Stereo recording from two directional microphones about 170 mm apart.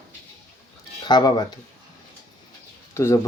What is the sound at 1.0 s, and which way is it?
Speech, 25° left (ahead or behind).